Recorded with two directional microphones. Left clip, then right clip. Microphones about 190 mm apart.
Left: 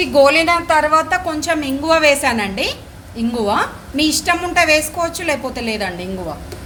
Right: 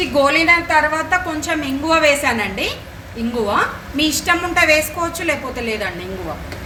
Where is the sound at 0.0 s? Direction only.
45° left (ahead or behind).